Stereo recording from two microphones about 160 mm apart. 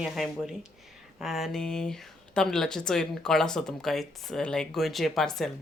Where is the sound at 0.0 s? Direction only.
5° right (ahead or behind).